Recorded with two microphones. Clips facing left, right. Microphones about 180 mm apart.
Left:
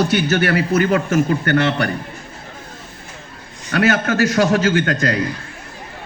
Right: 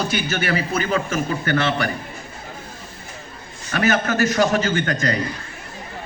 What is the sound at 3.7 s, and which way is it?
A man's voice, 70° left (ahead or behind).